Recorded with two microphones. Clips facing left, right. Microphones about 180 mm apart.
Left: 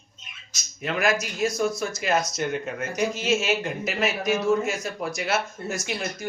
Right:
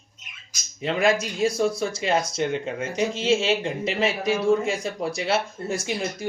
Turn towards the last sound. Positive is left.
turn(degrees=-30)  # may be behind; listen again after turning